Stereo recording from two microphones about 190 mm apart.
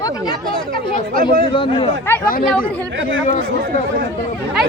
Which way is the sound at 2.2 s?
45° left (ahead or behind).